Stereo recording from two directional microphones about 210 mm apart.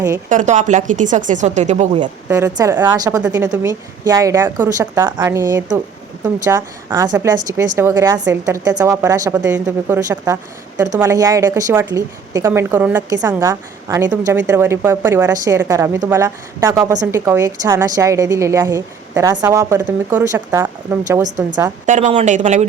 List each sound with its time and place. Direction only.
0.3 s a woman's voice: 35° right (ahead or behind)
2.6 s a woman's voice: 10° right (ahead or behind)
21.2 s a woman's voice: 35° right (ahead or behind)